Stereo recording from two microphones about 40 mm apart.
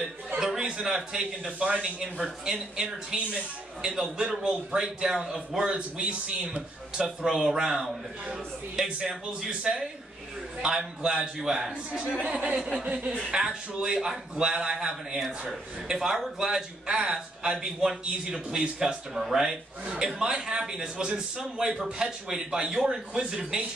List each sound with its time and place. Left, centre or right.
0.6 s a man's voice: centre
7.2 s a man's voice: centre
11.0 s speech: right
12.2 s a man's voice: right
13.3 s a man's voice: centre